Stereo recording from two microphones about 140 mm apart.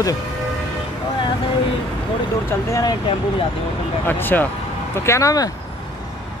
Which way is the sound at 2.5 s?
20° left (ahead or behind).